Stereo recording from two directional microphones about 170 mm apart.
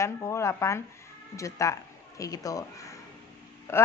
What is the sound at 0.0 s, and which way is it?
A woman's voice, 15° left (ahead or behind).